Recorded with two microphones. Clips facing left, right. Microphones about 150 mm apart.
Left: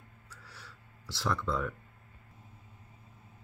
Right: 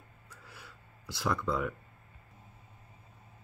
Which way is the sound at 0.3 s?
20° right (ahead or behind).